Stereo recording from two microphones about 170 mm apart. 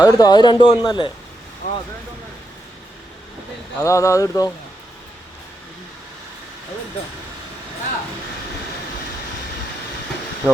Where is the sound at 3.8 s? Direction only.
20° left (ahead or behind).